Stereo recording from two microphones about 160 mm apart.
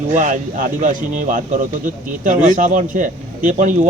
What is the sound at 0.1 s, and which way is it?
Speech, 50° right (ahead or behind).